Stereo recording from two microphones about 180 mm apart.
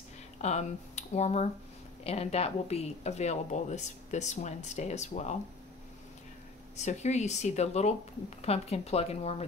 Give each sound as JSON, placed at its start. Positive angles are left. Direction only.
{"t": 0.4, "sound": "speech", "side_deg": 40}
{"t": 6.8, "sound": "speech", "side_deg": 40}